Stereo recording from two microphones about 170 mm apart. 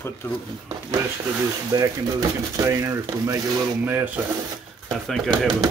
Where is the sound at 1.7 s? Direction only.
20° right (ahead or behind).